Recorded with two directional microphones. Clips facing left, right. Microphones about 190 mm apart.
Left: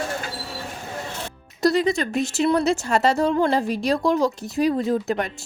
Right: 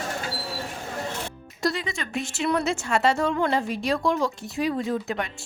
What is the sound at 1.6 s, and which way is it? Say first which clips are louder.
Speech: left 8 dB; 40° left (ahead or behind).